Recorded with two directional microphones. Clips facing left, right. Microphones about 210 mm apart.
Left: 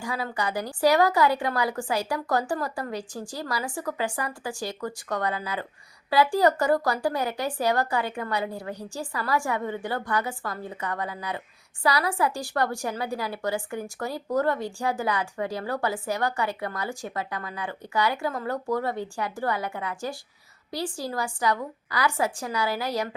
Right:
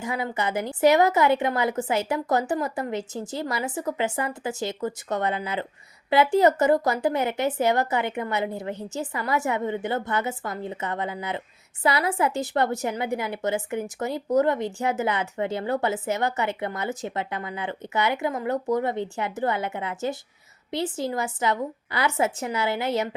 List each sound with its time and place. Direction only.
0.0 s a woman's voice: 20° right (ahead or behind)